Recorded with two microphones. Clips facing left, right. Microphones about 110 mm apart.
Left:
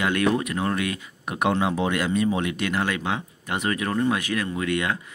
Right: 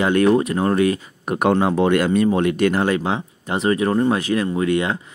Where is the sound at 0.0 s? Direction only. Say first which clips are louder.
Right 7 dB; 35° right (ahead or behind).